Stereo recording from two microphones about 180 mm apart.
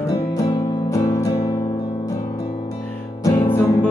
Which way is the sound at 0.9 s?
20° left (ahead or behind).